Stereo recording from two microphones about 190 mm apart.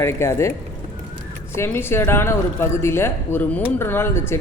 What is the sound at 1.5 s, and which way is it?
Speech, 10° left (ahead or behind).